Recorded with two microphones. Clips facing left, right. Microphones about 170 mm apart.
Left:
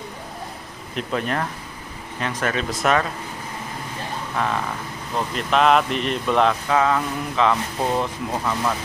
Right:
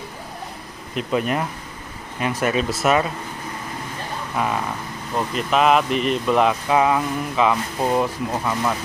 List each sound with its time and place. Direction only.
0.9 s speech: 10° right (ahead or behind)
4.4 s speech: 10° right (ahead or behind)
6.7 s speech: 15° right (ahead or behind)